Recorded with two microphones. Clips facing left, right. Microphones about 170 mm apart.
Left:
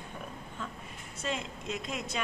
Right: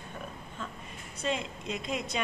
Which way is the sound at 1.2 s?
Centre (ahead or behind).